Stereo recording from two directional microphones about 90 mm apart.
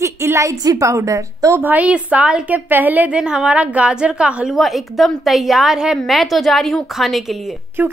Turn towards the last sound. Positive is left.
turn(degrees=-20)  # may be behind; listen again after turning